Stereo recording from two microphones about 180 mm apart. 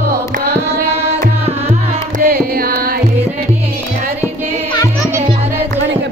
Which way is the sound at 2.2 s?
55° right (ahead or behind).